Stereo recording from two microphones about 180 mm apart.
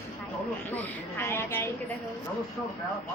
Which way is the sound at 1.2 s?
15° left (ahead or behind).